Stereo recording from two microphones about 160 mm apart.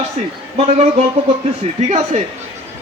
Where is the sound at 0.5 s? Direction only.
40° right (ahead or behind).